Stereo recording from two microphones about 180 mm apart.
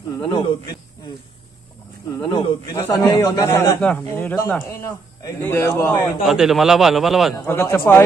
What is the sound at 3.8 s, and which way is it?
Speech, 10° left (ahead or behind).